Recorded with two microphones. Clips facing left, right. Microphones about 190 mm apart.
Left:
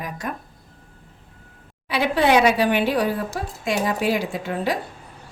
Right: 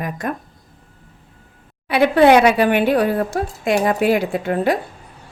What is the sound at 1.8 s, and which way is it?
Speech, 55° right (ahead or behind).